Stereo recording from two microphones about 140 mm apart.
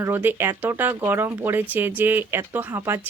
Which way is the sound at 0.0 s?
15° right (ahead or behind).